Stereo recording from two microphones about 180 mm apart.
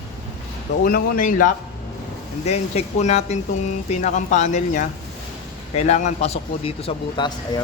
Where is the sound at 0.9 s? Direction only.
50° left (ahead or behind); by 7.6 s 25° left (ahead or behind).